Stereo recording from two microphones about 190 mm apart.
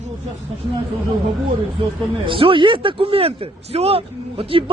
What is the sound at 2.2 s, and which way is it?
Speech, 25° right (ahead or behind).